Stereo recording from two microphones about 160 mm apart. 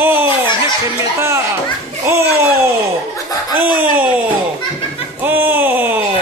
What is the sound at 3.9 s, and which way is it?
Speech, 10° right (ahead or behind).